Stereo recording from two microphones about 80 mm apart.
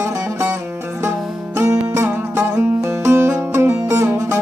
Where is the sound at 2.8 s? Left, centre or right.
Right.